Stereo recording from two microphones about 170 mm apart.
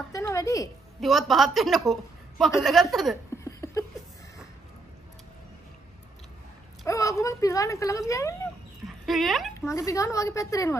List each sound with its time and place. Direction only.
0.1 s a sound: 20° left (ahead or behind)
1.0 s a woman's voice: centre (ahead or behind)
3.4 s chuckle: 20° left (ahead or behind)
6.9 s speech: 20° left (ahead or behind)
8.8 s speech: centre (ahead or behind)
9.7 s speech: 20° left (ahead or behind)